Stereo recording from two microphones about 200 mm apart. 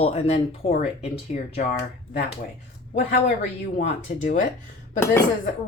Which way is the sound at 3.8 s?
40° left (ahead or behind).